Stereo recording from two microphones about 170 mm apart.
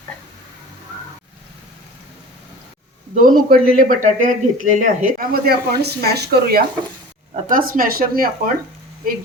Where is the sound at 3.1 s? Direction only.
55° right (ahead or behind).